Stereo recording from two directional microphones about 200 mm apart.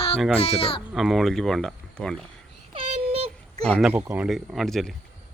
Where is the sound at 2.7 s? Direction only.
30° right (ahead or behind).